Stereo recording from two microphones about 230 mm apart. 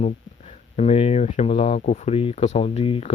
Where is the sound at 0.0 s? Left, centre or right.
Left.